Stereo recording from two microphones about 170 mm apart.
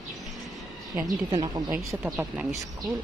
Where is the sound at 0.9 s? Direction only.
20° right (ahead or behind).